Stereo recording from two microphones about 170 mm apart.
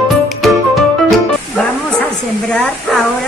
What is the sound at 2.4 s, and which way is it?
Speech, 5° left (ahead or behind).